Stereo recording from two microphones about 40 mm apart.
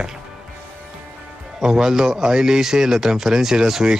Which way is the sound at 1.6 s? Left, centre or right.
Centre.